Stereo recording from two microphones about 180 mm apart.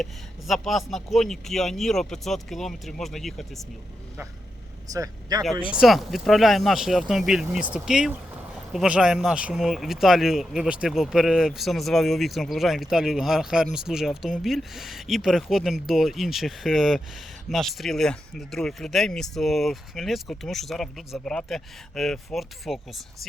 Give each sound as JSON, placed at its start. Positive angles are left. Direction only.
{"t": 0.0, "sound": "speech", "side_deg": 0}
{"t": 4.9, "sound": "speech", "side_deg": -20}
{"t": 5.7, "sound": "speech", "side_deg": 0}